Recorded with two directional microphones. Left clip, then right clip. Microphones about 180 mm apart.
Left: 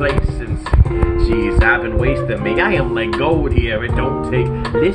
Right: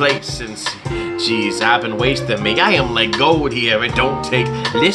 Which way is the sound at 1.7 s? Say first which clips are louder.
Right 1 dB; 30° right (ahead or behind).